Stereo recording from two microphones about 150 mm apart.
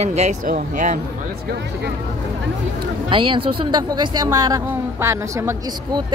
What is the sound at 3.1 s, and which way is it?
A woman's voice, 35° right (ahead or behind).